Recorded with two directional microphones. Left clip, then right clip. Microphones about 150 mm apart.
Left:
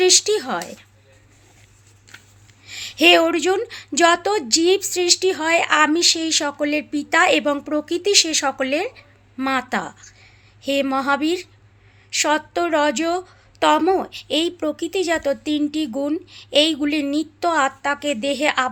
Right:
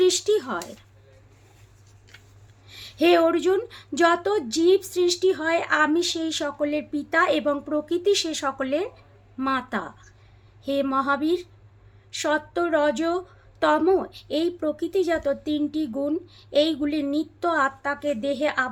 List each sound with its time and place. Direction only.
0.0 s a woman's voice: 15° left (ahead or behind)
2.1 s a sound: 90° left
2.6 s a woman's voice: 20° left (ahead or behind)